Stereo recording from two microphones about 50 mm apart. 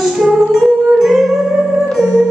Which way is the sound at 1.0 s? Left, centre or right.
Centre.